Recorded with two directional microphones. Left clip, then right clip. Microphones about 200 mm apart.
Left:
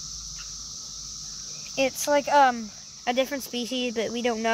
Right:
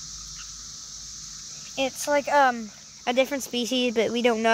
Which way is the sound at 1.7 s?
10° left (ahead or behind).